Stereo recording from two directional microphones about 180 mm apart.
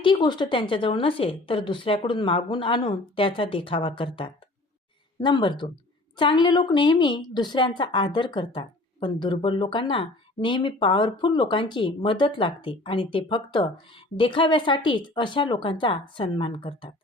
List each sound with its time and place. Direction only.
0.0 s a woman's voice: 25° left (ahead or behind)